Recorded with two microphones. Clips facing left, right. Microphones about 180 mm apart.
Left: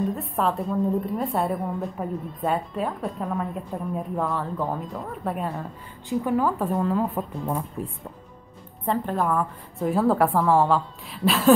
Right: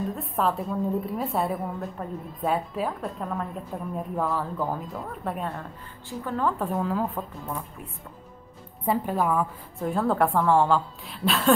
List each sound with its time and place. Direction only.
0.0 s a woman's voice: centre (ahead or behind)
6.0 s a woman's voice: 10° left (ahead or behind)
6.5 s a woman's voice: centre (ahead or behind)
7.4 s speech: 30° left (ahead or behind)
8.8 s a woman's voice: 10° right (ahead or behind)